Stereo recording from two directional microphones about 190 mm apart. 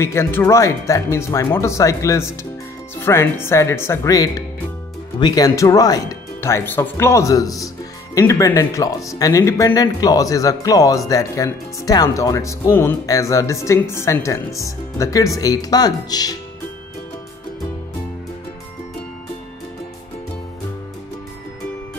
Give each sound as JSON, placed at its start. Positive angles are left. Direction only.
{"t": 0.0, "sound": "speech", "side_deg": 15}